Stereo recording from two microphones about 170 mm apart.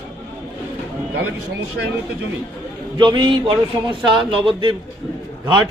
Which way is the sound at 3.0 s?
25° right (ahead or behind).